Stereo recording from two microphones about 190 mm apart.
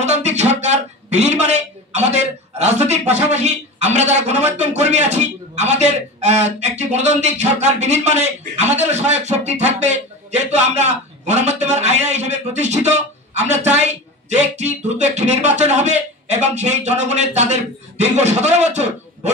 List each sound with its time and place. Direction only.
0.0 s a man's voice: 35° right (ahead or behind)